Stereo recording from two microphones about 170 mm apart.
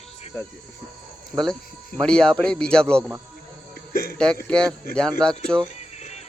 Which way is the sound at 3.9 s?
60° left (ahead or behind).